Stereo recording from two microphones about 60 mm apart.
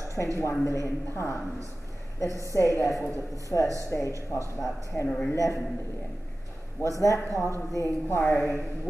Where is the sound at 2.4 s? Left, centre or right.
Left.